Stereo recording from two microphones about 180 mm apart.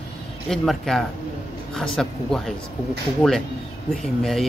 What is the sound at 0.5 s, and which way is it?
Speech, centre (ahead or behind).